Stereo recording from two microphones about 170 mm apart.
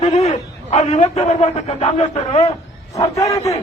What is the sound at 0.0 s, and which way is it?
A man's voice, 40° left (ahead or behind).